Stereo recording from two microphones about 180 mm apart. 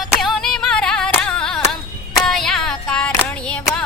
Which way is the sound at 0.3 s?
Centre (ahead or behind).